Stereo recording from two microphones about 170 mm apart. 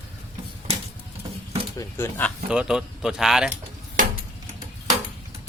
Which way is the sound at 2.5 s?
5° right (ahead or behind).